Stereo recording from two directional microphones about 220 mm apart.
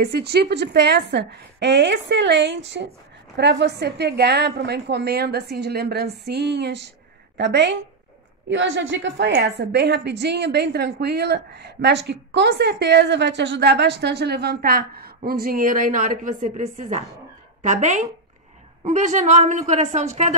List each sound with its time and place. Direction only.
0.0 s a woman's voice: 50° right (ahead or behind); by 20.3 s 30° right (ahead or behind)